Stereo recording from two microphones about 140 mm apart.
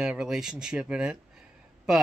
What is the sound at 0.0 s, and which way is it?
Speech, 5° right (ahead or behind).